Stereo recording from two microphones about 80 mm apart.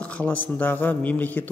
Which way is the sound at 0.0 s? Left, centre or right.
Centre.